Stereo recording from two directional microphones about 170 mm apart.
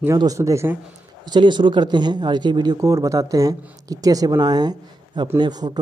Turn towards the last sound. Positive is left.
turn(degrees=-25)  # may be behind; listen again after turning